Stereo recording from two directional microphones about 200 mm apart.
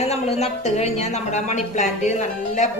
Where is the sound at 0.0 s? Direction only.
30° left (ahead or behind).